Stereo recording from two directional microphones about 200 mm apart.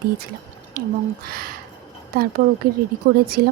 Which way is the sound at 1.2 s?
50° right (ahead or behind).